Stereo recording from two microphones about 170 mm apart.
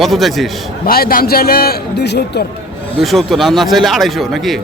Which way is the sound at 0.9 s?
60° left (ahead or behind).